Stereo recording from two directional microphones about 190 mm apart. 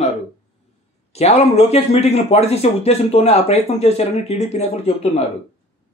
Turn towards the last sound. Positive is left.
turn(degrees=35)  # may be behind; listen again after turning